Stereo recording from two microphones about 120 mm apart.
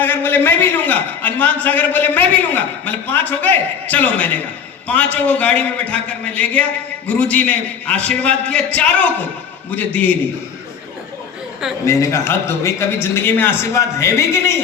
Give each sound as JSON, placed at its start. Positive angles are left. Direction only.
{"t": 0.0, "sound": "a man's voice", "side_deg": 15}
{"t": 11.9, "sound": "a man's voice", "side_deg": 25}